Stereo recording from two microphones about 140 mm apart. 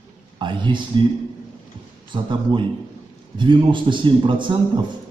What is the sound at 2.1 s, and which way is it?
A man's voice, 35° right (ahead or behind).